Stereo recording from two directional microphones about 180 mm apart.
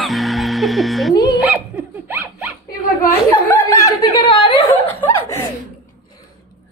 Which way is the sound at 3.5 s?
15° left (ahead or behind).